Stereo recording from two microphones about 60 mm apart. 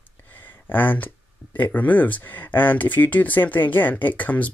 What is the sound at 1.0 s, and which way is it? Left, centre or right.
Speech, left.